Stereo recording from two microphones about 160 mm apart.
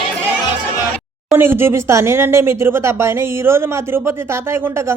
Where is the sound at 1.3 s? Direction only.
15° right (ahead or behind).